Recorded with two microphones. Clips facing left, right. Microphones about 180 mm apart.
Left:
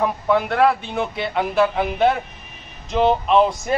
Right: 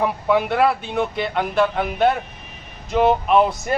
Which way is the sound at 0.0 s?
5° right (ahead or behind).